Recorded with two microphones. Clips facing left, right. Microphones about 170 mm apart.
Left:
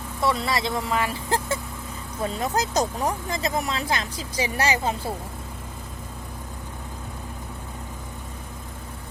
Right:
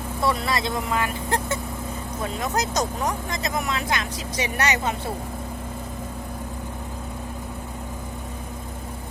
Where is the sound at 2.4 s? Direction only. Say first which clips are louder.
Left 1 dB; 30° left (ahead or behind).